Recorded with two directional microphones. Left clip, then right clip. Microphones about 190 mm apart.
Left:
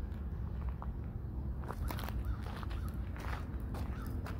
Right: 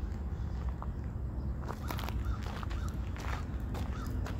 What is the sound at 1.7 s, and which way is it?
Walk, 10° left (ahead or behind).